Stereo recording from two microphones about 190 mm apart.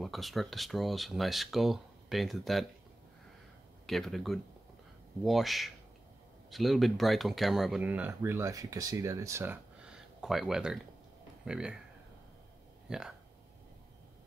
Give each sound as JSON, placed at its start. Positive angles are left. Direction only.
{"t": 0.0, "sound": "speech", "side_deg": 0}
{"t": 3.8, "sound": "speech", "side_deg": 0}
{"t": 12.8, "sound": "speech", "side_deg": -5}